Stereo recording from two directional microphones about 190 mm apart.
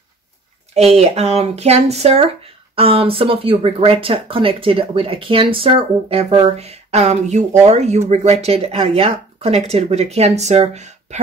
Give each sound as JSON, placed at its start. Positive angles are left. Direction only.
{"t": 0.7, "sound": "speech", "side_deg": -35}